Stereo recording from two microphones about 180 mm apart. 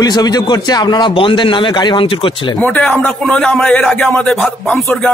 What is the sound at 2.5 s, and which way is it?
Speech, 10° left (ahead or behind).